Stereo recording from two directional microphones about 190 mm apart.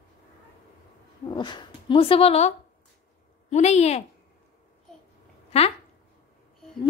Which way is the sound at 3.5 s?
35° left (ahead or behind).